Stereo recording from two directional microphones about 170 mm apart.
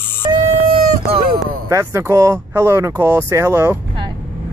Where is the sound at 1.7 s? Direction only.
15° right (ahead or behind).